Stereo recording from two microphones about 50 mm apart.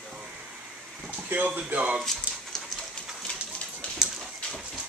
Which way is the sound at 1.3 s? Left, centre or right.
Right.